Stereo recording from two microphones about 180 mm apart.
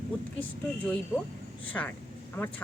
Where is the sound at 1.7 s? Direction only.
10° left (ahead or behind).